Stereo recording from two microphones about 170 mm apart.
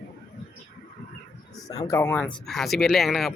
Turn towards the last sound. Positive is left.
turn(degrees=0)  # may be behind; listen again after turning